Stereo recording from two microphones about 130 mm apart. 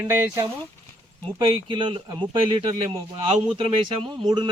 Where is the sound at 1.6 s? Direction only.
40° right (ahead or behind).